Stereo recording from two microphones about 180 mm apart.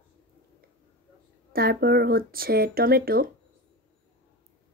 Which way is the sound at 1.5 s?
55° right (ahead or behind).